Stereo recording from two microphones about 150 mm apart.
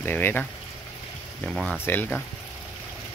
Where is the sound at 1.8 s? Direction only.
15° left (ahead or behind).